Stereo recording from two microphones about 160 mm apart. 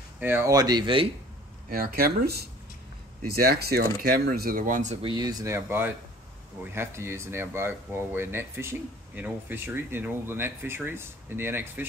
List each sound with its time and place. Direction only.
0.2 s speech: 15° right (ahead or behind); by 1.0 s 30° right (ahead or behind)
1.7 s speech: 65° right (ahead or behind)
5.0 s speech: 25° right (ahead or behind)